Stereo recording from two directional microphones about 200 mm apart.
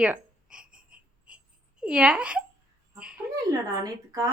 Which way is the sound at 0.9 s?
5° right (ahead or behind).